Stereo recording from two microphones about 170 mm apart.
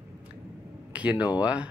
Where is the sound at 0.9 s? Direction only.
10° right (ahead or behind).